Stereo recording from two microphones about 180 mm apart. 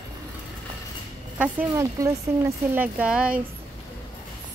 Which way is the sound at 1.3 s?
10° right (ahead or behind).